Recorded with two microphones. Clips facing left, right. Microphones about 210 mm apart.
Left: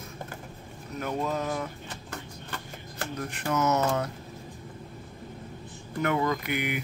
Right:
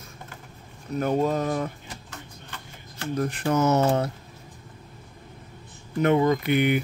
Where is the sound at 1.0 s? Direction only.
35° right (ahead or behind).